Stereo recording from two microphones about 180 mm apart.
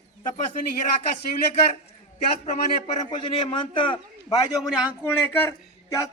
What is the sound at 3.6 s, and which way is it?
Speech, 30° left (ahead or behind).